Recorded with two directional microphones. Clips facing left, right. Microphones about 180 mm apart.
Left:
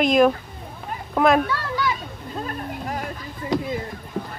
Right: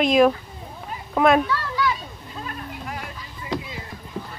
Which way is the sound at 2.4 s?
40° left (ahead or behind).